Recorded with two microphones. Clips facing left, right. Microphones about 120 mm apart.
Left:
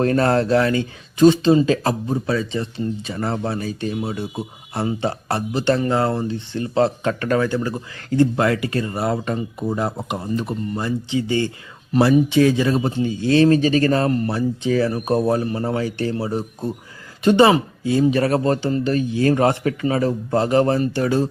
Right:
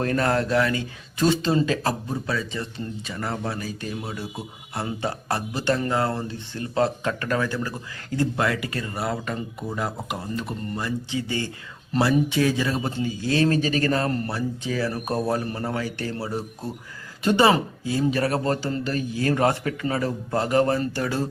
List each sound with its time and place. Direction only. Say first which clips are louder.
0.0 s speech: left 5 dB; 30° left (ahead or behind)
1.2 s speech: left 8 dB; 20° left (ahead or behind)